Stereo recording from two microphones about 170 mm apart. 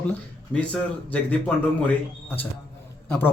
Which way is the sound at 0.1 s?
5° left (ahead or behind).